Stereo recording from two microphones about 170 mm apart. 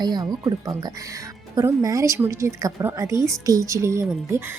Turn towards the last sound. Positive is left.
turn(degrees=-15)  # may be behind; listen again after turning